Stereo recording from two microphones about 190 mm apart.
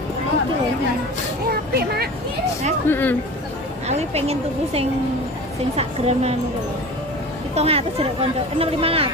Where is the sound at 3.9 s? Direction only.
35° right (ahead or behind).